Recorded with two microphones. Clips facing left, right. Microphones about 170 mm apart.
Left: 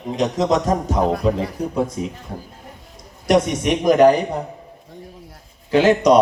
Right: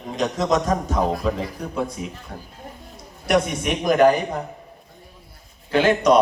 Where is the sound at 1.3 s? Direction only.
30° left (ahead or behind).